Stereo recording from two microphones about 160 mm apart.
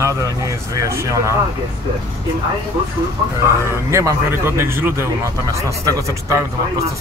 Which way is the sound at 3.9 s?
15° right (ahead or behind).